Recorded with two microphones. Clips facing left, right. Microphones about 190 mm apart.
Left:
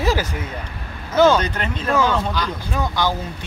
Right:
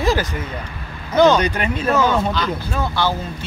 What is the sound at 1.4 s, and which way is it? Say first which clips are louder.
Speech: right 4 dB; 10° right (ahead or behind).